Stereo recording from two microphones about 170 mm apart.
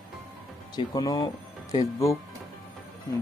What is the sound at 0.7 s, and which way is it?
Speech, 25° left (ahead or behind).